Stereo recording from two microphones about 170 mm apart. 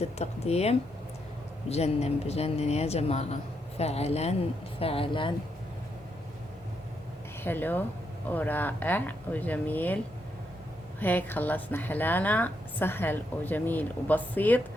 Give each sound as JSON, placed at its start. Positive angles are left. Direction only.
{"t": 0.0, "sound": "speech", "side_deg": 40}
{"t": 7.4, "sound": "a woman's voice", "side_deg": 10}
{"t": 11.0, "sound": "a woman's voice", "side_deg": 10}